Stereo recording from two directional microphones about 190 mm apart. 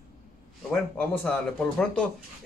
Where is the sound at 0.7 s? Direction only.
5° left (ahead or behind).